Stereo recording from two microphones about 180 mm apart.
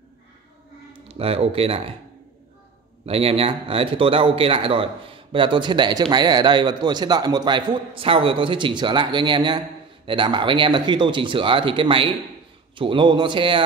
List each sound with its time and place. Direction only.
1.0 s speech: 35° right (ahead or behind)
3.1 s speech: 30° right (ahead or behind)